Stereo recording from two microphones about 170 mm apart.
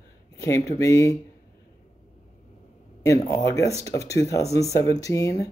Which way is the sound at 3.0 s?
20° left (ahead or behind).